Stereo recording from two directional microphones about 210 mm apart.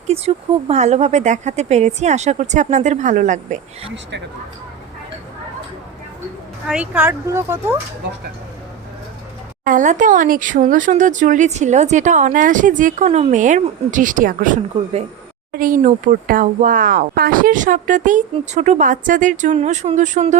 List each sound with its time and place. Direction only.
0.1 s speech: 30° right (ahead or behind)
6.7 s speech: 5° right (ahead or behind)
9.6 s speech: 35° right (ahead or behind)